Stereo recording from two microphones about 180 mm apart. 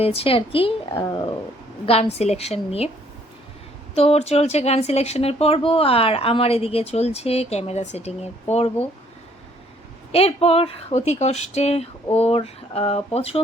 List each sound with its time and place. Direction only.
0.0 s speech: 35° left (ahead or behind)
1.9 s speech: 35° left (ahead or behind)
3.9 s speech: 35° left (ahead or behind)
10.1 s speech: 35° left (ahead or behind)